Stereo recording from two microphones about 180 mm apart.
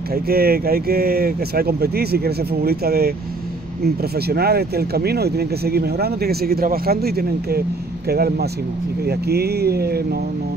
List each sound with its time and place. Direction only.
0.1 s speech: 55° right (ahead or behind)